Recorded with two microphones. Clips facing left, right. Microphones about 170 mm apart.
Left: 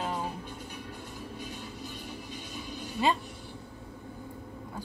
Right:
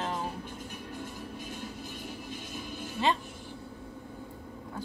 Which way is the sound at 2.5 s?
50° right (ahead or behind).